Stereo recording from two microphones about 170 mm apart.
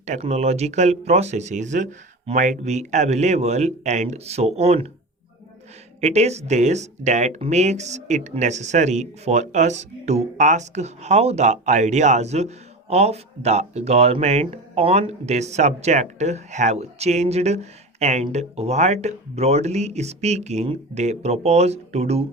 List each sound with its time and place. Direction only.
0.0 s speech: 40° right (ahead or behind)
6.0 s speech: 40° right (ahead or behind)